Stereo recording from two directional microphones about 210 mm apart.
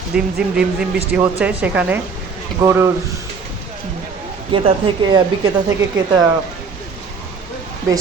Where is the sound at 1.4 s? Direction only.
5° right (ahead or behind).